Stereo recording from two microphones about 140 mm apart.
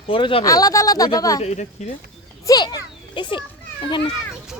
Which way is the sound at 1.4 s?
50° left (ahead or behind).